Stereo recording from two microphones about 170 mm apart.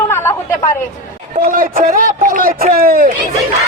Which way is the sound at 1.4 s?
55° right (ahead or behind).